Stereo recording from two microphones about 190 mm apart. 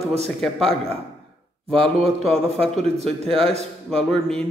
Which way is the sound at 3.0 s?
30° right (ahead or behind).